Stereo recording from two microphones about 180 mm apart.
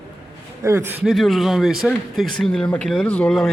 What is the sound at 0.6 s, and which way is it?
Speech, 15° right (ahead or behind).